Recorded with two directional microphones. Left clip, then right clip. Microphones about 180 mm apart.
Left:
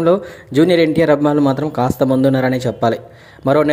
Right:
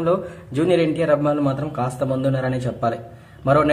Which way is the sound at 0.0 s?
35° left (ahead or behind).